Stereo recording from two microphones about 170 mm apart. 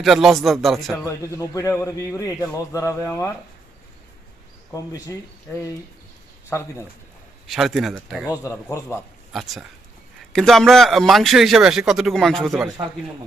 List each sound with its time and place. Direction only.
0.0 s speech: centre (ahead or behind)
0.9 s a man's voice: 20° left (ahead or behind)
4.7 s a man's voice: 20° left (ahead or behind)
6.5 s a man's voice: 15° left (ahead or behind)
7.4 s speech: centre (ahead or behind)
8.4 s a man's voice: 20° left (ahead or behind)
9.3 s speech: centre (ahead or behind)